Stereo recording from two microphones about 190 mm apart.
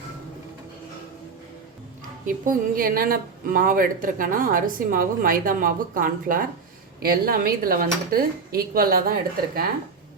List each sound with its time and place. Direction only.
2.2 s a woman's voice: 45° right (ahead or behind)